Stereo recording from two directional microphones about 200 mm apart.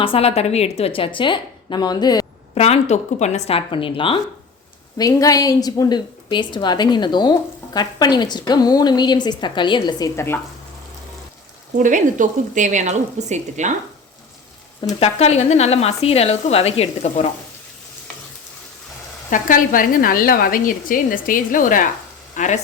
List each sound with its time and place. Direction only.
0.0 s a woman's voice: 30° left (ahead or behind)
2.6 s a woman's voice: 30° left (ahead or behind); by 10.4 s 10° left (ahead or behind)
11.8 s speech: 40° right (ahead or behind)
14.8 s speech: 25° left (ahead or behind)
19.3 s speech: 45° left (ahead or behind)